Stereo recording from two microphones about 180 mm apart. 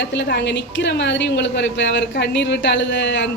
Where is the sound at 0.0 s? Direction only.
80° left.